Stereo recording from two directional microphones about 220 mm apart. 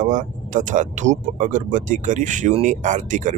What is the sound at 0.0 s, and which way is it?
Speech, 35° right (ahead or behind).